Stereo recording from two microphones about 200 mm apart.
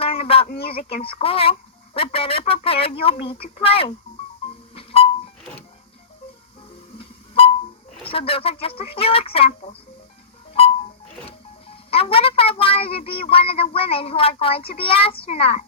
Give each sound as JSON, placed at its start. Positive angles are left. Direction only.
{"t": 0.0, "sound": "a sound", "side_deg": 30}
{"t": 1.0, "sound": "speech", "side_deg": 30}
{"t": 4.7, "sound": "music", "side_deg": 30}
{"t": 8.1, "sound": "speech", "side_deg": 30}
{"t": 10.5, "sound": "a sound", "side_deg": 30}
{"t": 11.9, "sound": "speech", "side_deg": 30}